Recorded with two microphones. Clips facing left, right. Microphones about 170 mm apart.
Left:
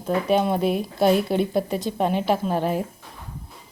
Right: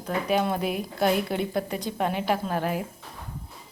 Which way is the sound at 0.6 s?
15° right (ahead or behind).